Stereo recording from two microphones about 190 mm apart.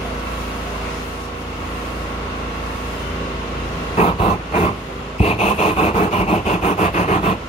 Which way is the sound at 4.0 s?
35° left (ahead or behind).